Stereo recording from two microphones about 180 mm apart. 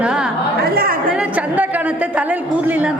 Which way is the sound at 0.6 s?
55° right (ahead or behind).